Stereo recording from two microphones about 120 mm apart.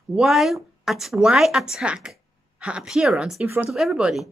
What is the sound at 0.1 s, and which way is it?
Speech, 5° right (ahead or behind).